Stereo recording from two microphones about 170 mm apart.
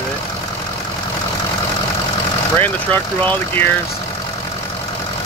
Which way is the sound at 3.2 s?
10° left (ahead or behind).